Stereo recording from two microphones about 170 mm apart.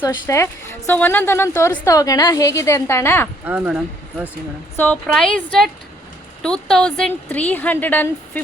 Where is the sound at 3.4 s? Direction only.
10° right (ahead or behind).